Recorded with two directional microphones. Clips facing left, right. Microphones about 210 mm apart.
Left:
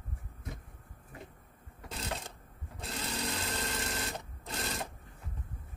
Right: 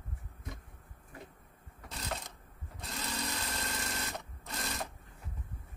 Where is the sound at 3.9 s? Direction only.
30° left (ahead or behind).